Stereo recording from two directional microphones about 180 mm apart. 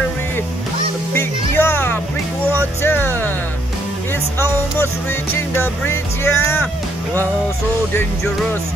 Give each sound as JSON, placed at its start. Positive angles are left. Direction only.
{"t": 1.1, "sound": "music", "side_deg": 10}
{"t": 2.8, "sound": "speech", "side_deg": 10}
{"t": 5.5, "sound": "speech", "side_deg": 15}